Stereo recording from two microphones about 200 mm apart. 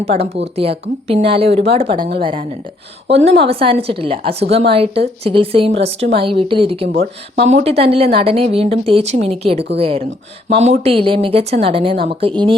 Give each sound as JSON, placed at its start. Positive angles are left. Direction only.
{"t": 0.0, "sound": "a woman's voice", "side_deg": -30}